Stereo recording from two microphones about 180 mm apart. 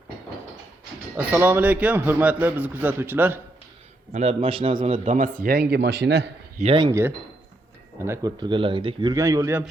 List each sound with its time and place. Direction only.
1.1 s a man's voice: 10° right (ahead or behind)
4.1 s a man's voice: 35° right (ahead or behind)
5.0 s speech: 45° right (ahead or behind)
5.4 s a man's voice: 60° right (ahead or behind)
6.6 s a man's voice: 30° right (ahead or behind)
8.0 s a man's voice: 20° right (ahead or behind)